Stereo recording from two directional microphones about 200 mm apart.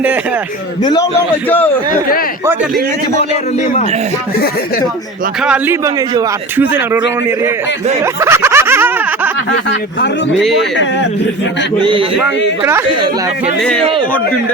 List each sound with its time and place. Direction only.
0.8 s a man's voice: 20° left (ahead or behind)
2.5 s a man's voice: 5° right (ahead or behind)
5.4 s speech: 10° right (ahead or behind)
8.0 s a sound: 15° right (ahead or behind)
9.6 s a man's voice: 60° left (ahead or behind)
11.8 s a man's voice: 25° right (ahead or behind)